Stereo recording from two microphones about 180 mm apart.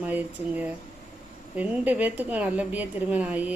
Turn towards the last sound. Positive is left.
turn(degrees=-10)  # may be behind; listen again after turning